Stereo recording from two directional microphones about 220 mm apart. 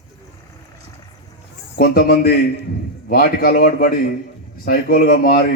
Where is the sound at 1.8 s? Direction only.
40° left (ahead or behind).